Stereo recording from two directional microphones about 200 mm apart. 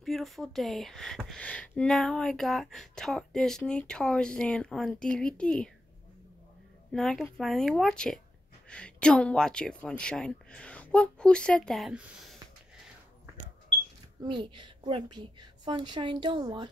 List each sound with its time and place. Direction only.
0.0 s speech: centre (ahead or behind)
6.9 s speech: centre (ahead or behind)
14.2 s a woman's voice: 25° right (ahead or behind)